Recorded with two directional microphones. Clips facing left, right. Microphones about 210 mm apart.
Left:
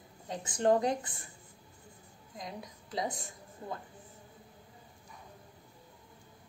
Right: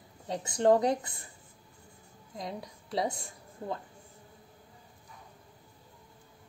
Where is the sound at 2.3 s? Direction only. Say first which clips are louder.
Right 4 dB; 25° right (ahead or behind).